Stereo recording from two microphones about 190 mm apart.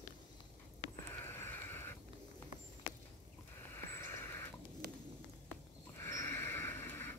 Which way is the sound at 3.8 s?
10° left (ahead or behind).